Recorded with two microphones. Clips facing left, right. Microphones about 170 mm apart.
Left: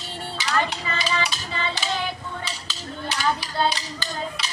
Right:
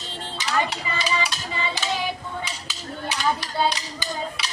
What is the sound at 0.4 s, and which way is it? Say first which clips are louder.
Dishes: even; 5° right (ahead or behind).